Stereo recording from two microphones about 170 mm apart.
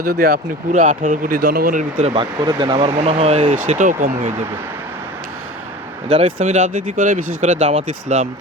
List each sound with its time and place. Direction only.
0.7 s speech: 50° right (ahead or behind)
2.1 s speech: 25° right (ahead or behind); by 4.1 s 50° right (ahead or behind)
6.1 s speech: 40° right (ahead or behind)